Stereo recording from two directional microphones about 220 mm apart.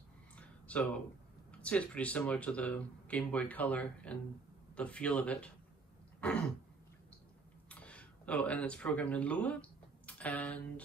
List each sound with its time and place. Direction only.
0.4 s a sound: 5° left (ahead or behind)
1.6 s speech: 5° left (ahead or behind)
7.7 s speech: 5° left (ahead or behind)